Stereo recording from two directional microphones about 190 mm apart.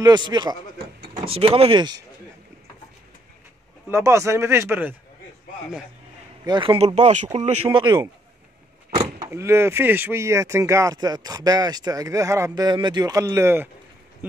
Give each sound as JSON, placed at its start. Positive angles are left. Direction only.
{"t": 0.0, "sound": "speech", "side_deg": -20}
{"t": 3.9, "sound": "speech", "side_deg": -15}
{"t": 6.4, "sound": "speech", "side_deg": -25}
{"t": 7.7, "sound": "speech", "side_deg": -20}